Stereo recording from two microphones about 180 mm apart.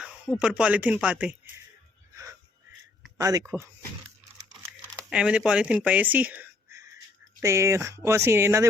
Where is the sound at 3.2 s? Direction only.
20° right (ahead or behind).